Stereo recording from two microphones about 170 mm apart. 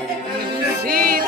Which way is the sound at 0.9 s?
60° right (ahead or behind).